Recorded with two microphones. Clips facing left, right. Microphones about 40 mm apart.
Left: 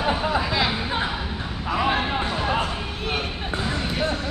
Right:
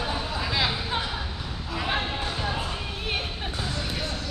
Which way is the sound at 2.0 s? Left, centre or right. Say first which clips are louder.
Left 5 dB; left.